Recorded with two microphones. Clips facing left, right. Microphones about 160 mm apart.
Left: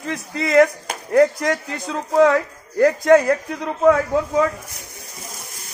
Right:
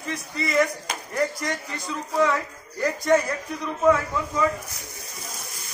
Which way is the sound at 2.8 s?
70° left (ahead or behind).